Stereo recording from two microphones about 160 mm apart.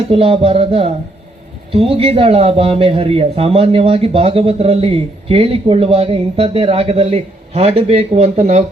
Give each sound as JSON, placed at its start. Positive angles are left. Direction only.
{"t": 0.1, "sound": "a man's voice", "side_deg": -35}